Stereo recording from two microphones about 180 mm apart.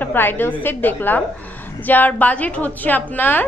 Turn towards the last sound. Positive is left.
turn(degrees=10)  # may be behind; listen again after turning